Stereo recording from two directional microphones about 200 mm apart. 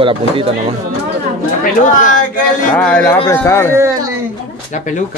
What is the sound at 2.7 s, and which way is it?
Speech, 5° left (ahead or behind).